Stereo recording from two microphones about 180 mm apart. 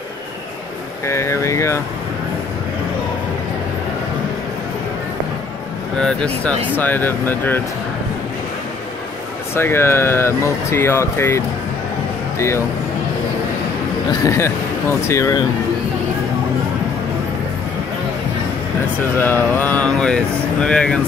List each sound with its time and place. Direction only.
1.0 s speech: 15° left (ahead or behind)
5.9 s speech: 5° left (ahead or behind)
9.6 s speech: 15° left (ahead or behind)
14.2 s speech: 15° left (ahead or behind)
19.1 s speech: 10° left (ahead or behind)